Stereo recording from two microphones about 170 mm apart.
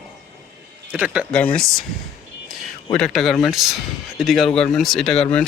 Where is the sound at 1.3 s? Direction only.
5° left (ahead or behind).